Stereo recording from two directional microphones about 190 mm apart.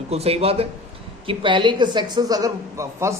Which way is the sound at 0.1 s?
30° right (ahead or behind).